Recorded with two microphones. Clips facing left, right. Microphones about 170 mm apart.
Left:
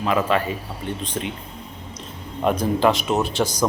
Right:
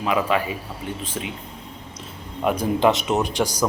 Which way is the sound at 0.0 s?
10° right (ahead or behind).